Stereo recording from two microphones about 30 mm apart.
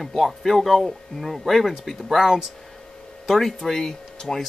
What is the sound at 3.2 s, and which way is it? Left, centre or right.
Speech, centre.